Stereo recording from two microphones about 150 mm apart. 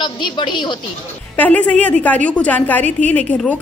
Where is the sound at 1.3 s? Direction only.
10° left (ahead or behind).